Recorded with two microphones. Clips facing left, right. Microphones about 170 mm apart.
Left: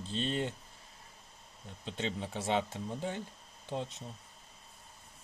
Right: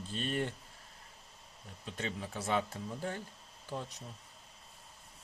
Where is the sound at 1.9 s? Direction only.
25° left (ahead or behind).